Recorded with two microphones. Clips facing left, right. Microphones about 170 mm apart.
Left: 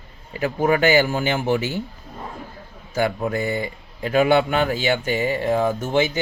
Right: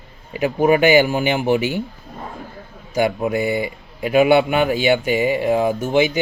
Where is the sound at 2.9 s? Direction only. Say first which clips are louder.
Right 3 dB; 15° right (ahead or behind).